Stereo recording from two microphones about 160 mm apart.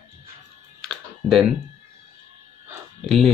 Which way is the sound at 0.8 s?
Centre (ahead or behind).